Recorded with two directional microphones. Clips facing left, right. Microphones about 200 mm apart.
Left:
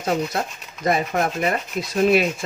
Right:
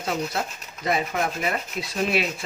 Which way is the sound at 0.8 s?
45° left (ahead or behind).